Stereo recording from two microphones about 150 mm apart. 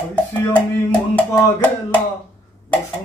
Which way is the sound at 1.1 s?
10° left (ahead or behind).